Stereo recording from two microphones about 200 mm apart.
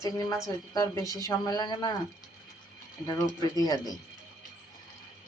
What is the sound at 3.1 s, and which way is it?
Speech, 15° left (ahead or behind).